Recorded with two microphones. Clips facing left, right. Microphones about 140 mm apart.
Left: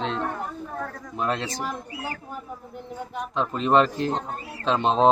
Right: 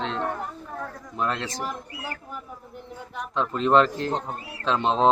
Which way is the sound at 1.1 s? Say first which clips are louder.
Left 1 dB; 15° left (ahead or behind).